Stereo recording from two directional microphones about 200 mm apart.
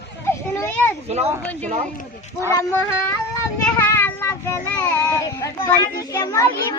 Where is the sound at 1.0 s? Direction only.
30° right (ahead or behind).